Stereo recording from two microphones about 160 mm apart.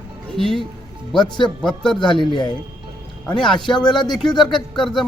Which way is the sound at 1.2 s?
30° left (ahead or behind).